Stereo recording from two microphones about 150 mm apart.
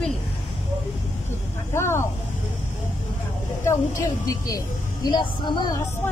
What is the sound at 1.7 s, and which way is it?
Speech, 15° left (ahead or behind).